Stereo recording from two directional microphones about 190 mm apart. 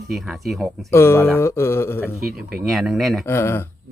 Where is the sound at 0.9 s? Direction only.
15° left (ahead or behind).